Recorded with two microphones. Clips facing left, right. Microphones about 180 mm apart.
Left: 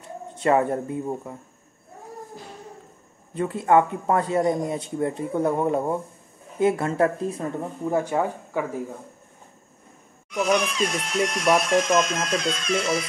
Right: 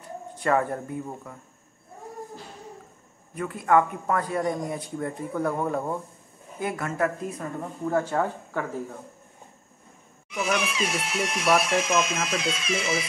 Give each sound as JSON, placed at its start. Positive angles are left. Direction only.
{"t": 0.0, "sound": "speech", "side_deg": 20}
{"t": 3.3, "sound": "speech", "side_deg": 25}
{"t": 7.8, "sound": "speech", "side_deg": 15}
{"t": 10.3, "sound": "speech", "side_deg": -5}